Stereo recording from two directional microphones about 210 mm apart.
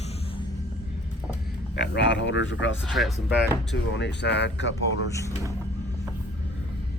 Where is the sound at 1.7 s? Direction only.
60° left (ahead or behind).